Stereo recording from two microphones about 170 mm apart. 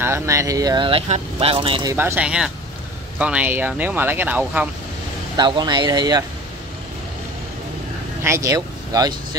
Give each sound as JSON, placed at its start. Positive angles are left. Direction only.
{"t": 0.0, "sound": "speech", "side_deg": -15}
{"t": 2.0, "sound": "speech", "side_deg": -10}
{"t": 5.4, "sound": "speech", "side_deg": -25}
{"t": 8.2, "sound": "speech", "side_deg": -15}